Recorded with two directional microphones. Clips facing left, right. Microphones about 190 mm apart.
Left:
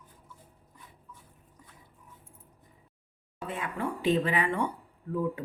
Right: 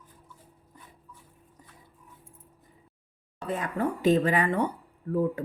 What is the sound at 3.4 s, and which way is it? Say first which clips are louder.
A woman's voice: right 5 dB; 40° right (ahead or behind).